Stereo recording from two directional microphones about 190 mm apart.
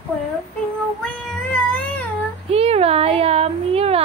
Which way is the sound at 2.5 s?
30° right (ahead or behind).